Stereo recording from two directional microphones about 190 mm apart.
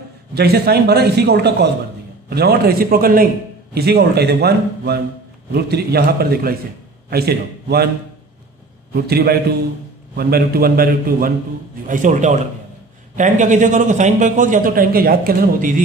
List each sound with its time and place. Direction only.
0.3 s a man's voice: 55° right (ahead or behind)
8.9 s a man's voice: 55° right (ahead or behind)